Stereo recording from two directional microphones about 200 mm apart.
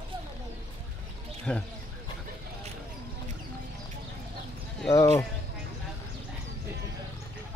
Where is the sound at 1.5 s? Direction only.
5° left (ahead or behind).